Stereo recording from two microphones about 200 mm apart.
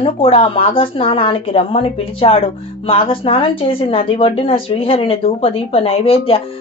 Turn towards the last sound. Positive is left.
turn(degrees=30)  # may be behind; listen again after turning